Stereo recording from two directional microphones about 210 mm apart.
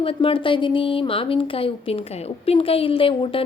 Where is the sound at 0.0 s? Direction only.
25° left (ahead or behind).